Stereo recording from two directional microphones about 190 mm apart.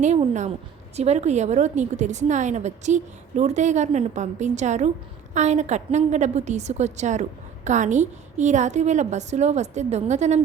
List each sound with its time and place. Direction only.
0.0 s a woman's voice: 40° right (ahead or behind)